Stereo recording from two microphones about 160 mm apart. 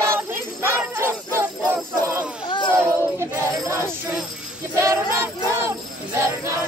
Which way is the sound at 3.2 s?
15° right (ahead or behind).